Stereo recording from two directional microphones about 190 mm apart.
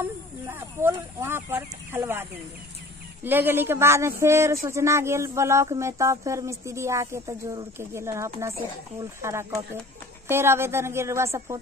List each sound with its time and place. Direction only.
0.0 s speech: 10° right (ahead or behind)
3.3 s speech: 10° right (ahead or behind)